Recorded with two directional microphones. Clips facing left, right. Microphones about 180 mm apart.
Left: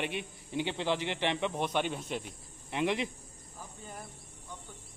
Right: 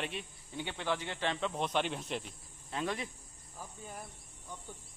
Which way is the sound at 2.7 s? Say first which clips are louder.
Left 6 dB; 15° left (ahead or behind).